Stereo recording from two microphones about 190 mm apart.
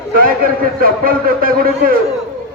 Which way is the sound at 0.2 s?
50° right (ahead or behind).